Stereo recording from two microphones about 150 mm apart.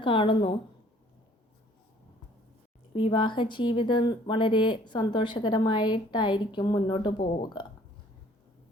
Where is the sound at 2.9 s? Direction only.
35° left (ahead or behind).